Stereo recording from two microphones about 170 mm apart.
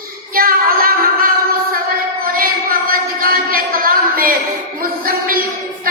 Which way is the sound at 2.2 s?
60° right (ahead or behind).